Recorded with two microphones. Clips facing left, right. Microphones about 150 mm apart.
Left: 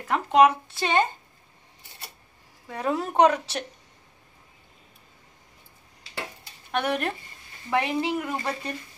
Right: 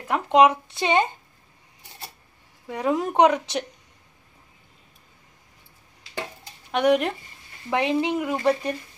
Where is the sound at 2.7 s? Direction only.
15° right (ahead or behind).